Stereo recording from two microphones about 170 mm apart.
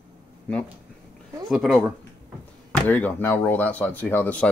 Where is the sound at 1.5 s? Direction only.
Centre (ahead or behind).